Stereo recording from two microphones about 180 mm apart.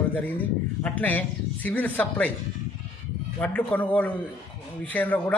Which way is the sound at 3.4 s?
10° left (ahead or behind).